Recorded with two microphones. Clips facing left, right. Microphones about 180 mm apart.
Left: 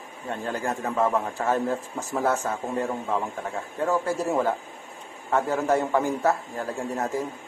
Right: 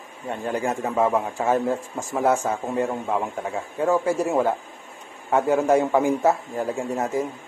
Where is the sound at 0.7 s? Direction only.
20° right (ahead or behind).